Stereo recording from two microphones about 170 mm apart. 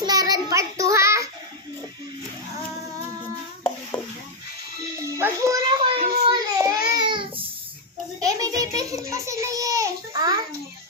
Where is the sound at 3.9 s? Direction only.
25° left (ahead or behind).